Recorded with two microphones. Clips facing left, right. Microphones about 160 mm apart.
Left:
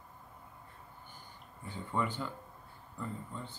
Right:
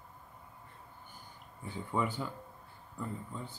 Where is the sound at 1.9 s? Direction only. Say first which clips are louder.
Right 1 dB; 10° right (ahead or behind).